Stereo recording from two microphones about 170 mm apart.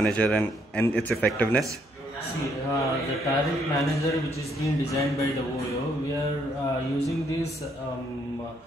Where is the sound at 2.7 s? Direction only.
20° left (ahead or behind).